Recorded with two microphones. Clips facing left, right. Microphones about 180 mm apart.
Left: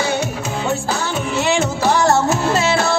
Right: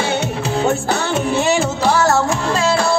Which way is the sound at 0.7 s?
60° right (ahead or behind).